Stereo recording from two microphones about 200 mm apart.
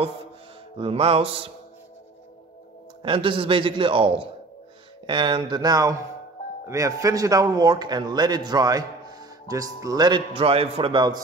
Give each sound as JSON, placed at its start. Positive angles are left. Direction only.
{"t": 0.7, "sound": "a man's voice", "side_deg": -25}
{"t": 3.0, "sound": "a man's voice", "side_deg": -25}